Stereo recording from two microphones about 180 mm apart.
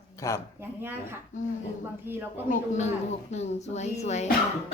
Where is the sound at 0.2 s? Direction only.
15° left (ahead or behind).